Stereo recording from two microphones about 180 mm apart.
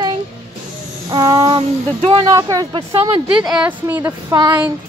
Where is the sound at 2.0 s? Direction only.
30° right (ahead or behind).